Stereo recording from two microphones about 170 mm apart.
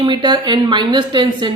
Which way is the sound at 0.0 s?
25° right (ahead or behind).